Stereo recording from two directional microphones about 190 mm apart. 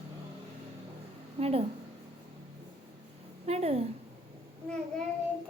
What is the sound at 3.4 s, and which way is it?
Speech, 35° right (ahead or behind).